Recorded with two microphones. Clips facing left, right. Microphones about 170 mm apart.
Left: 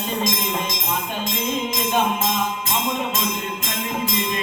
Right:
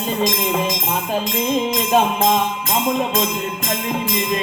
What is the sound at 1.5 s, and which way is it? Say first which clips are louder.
Music: right 7 dB; 35° right (ahead or behind).